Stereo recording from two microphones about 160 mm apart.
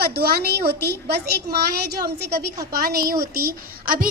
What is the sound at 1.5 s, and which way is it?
Speech, 75° right (ahead or behind).